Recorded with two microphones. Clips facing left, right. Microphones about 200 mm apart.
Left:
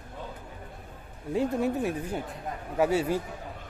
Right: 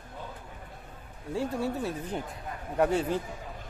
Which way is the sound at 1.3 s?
15° left (ahead or behind).